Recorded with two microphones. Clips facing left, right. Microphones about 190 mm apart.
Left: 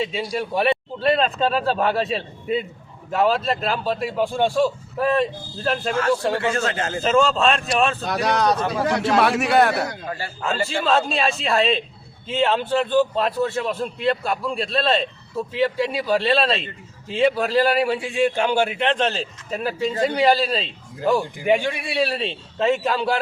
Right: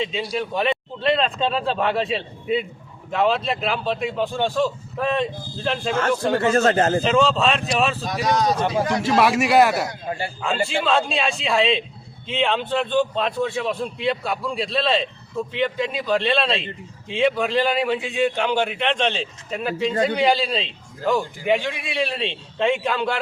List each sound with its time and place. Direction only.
0.0 s a man's voice: 5° left (ahead or behind)
6.4 s a man's voice: 40° right (ahead or behind)
7.0 s a man's voice: centre (ahead or behind)
8.0 s speech: 65° left (ahead or behind)
9.0 s a man's voice: centre (ahead or behind)
10.1 s a man's voice: 20° right (ahead or behind)
10.7 s a man's voice: centre (ahead or behind)